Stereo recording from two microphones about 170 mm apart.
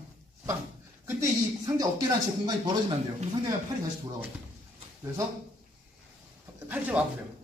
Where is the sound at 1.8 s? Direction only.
20° right (ahead or behind).